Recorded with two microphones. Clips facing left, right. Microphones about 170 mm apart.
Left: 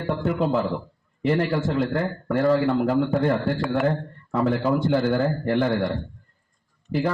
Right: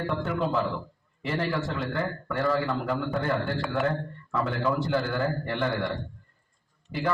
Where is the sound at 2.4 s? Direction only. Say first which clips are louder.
Left 7 dB; 30° left (ahead or behind).